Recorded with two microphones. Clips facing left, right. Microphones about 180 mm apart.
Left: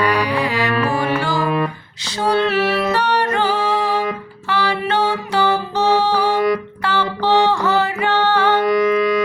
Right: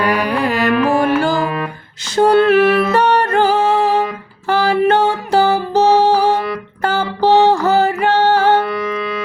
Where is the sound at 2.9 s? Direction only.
45° right (ahead or behind).